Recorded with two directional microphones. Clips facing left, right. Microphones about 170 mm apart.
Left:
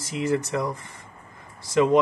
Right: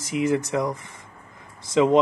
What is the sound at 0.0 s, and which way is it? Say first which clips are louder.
Speech: right 2 dB; 15° right (ahead or behind).